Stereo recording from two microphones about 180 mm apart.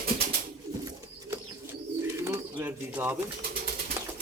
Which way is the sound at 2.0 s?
15° right (ahead or behind).